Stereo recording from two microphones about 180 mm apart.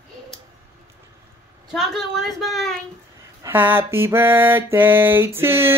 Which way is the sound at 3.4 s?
10° right (ahead or behind).